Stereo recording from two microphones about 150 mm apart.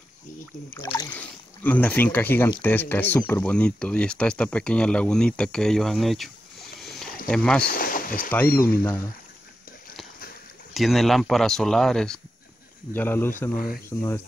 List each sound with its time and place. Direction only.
0.7 s speech: 20° left (ahead or behind); by 6.3 s centre (ahead or behind)
6.8 s rowboat: centre (ahead or behind)
7.2 s speech: 5° left (ahead or behind)
7.6 s speech: 70° left (ahead or behind)
8.5 s speech: 15° left (ahead or behind)
10.7 s speech: centre (ahead or behind)
12.9 s speech: 15° left (ahead or behind)